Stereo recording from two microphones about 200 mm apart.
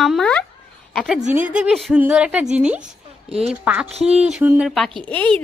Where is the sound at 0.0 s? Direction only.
Centre (ahead or behind).